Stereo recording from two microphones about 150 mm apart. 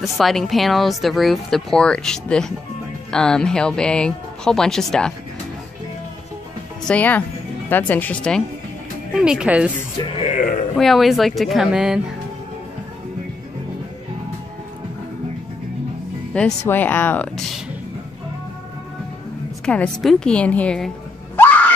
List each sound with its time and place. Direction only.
0.0 s speech: centre (ahead or behind)
6.9 s a woman's voice: 10° left (ahead or behind); by 9.7 s 5° right (ahead or behind)
10.1 s speech: 55° left (ahead or behind)
10.8 s speech: centre (ahead or behind)
16.6 s a woman's voice: 15° left (ahead or behind)
19.6 s a woman's voice: 5° left (ahead or behind)
21.4 s screaming: 10° left (ahead or behind)